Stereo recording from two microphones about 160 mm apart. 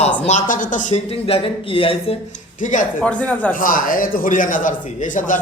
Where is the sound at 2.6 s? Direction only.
55° left (ahead or behind).